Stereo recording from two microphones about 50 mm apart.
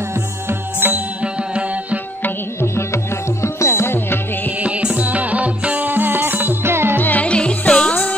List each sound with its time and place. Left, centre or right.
0.1 s music: right
1.2 s music: right
2.6 s music: left
4.6 s music: right
7.0 s music: left
7.2 s music: left